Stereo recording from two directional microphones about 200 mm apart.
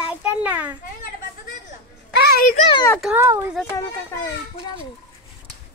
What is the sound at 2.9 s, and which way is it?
Speech, centre (ahead or behind).